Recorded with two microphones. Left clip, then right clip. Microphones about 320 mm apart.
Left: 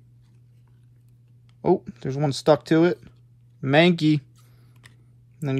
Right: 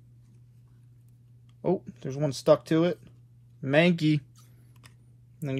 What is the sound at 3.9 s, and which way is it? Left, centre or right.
Speech, centre.